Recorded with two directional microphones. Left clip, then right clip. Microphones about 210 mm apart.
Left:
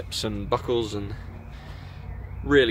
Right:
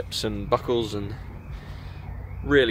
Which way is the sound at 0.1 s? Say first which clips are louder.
Right 1 dB; centre (ahead or behind).